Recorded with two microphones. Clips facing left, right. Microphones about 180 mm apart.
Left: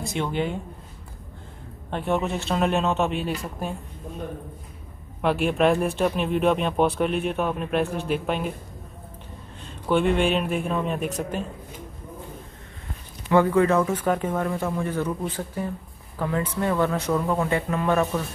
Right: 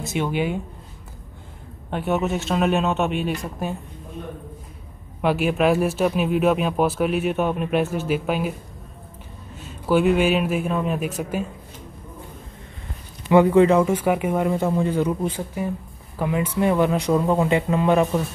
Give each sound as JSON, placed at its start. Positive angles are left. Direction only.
{"t": 0.0, "sound": "speech", "side_deg": -5}
{"t": 1.9, "sound": "speech", "side_deg": -5}
{"t": 5.2, "sound": "speech", "side_deg": -5}
{"t": 9.6, "sound": "speech", "side_deg": -5}
{"t": 13.3, "sound": "speech", "side_deg": -20}